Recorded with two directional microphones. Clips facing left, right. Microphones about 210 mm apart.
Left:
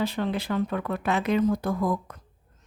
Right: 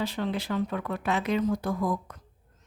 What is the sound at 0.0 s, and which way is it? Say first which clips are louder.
A woman's voice: left 3 dB; 55° left (ahead or behind).